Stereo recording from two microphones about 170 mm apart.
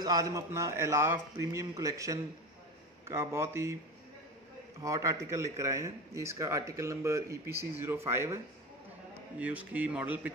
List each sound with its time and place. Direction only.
0.0 s a man's voice: 20° right (ahead or behind)
4.8 s speech: 20° right (ahead or behind)
9.4 s speech: 10° right (ahead or behind)